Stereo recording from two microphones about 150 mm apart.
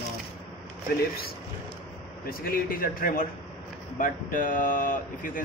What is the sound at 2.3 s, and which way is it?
A man's voice, 80° left.